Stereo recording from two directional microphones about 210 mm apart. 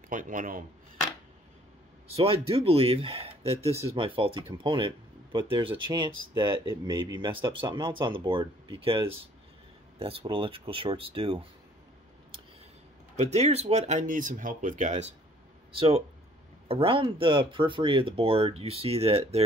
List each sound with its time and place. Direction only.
0.1 s speech: 40° right (ahead or behind)
2.1 s speech: 25° right (ahead or behind)
13.2 s speech: 30° right (ahead or behind)